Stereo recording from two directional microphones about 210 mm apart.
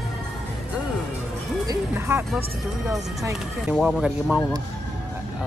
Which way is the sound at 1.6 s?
10° right (ahead or behind).